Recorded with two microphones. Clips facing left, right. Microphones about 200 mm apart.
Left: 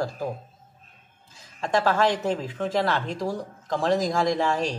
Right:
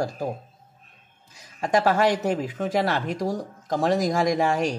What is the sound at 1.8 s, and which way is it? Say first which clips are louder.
Speech: right 1 dB; 15° right (ahead or behind).